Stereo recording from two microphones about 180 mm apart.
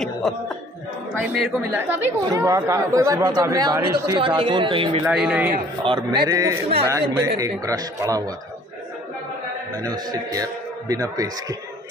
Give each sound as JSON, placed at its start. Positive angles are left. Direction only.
{"t": 1.2, "sound": "a man's voice", "side_deg": -5}
{"t": 5.0, "sound": "speech", "side_deg": -5}
{"t": 5.9, "sound": "a man's voice", "side_deg": -25}
{"t": 9.8, "sound": "a man's voice", "side_deg": -20}